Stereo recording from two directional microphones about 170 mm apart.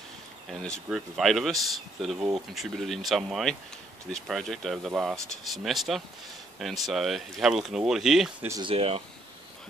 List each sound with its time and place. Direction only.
0.5 s speech: 5° left (ahead or behind)
8.5 s speech: 25° right (ahead or behind)
8.7 s speech: 35° right (ahead or behind)